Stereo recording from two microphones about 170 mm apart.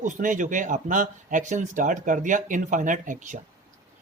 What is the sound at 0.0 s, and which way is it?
Speech, 50° right (ahead or behind).